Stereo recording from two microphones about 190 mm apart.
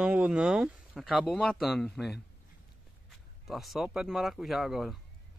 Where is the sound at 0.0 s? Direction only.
5° right (ahead or behind).